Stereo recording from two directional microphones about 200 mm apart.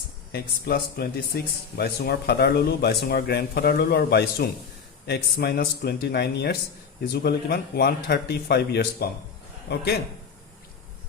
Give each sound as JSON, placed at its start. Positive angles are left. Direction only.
{"t": 0.3, "sound": "a man's voice", "side_deg": 55}